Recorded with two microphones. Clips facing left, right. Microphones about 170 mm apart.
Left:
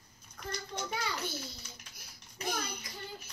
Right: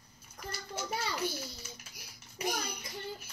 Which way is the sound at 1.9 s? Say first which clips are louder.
Right 3 dB; 10° right (ahead or behind).